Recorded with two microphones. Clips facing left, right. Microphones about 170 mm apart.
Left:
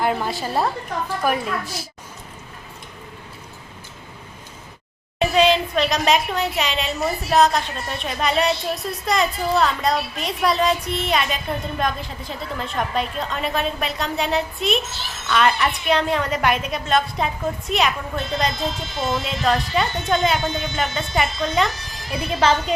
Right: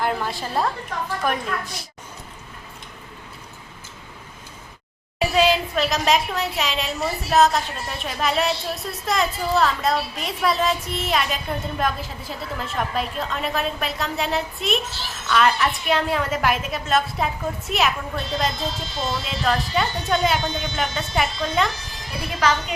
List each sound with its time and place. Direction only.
0.0 s a woman's voice: 5° left (ahead or behind)
5.2 s a woman's voice: 5° right (ahead or behind)
22.4 s speech: 30° left (ahead or behind)